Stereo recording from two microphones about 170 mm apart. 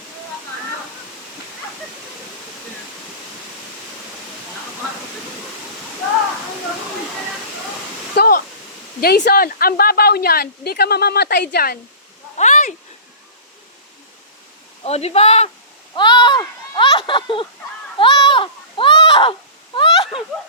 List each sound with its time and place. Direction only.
8.1 s waterfall: 65° left (ahead or behind)
9.0 s a woman's voice: 70° left (ahead or behind)
12.4 s a sound: 45° left (ahead or behind)
14.8 s speech: 40° left (ahead or behind)
16.0 s speech: 25° left (ahead or behind)
17.9 s a sound: 30° left (ahead or behind)